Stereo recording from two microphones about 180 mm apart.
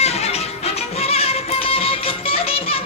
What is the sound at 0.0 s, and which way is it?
Music, 35° left (ahead or behind).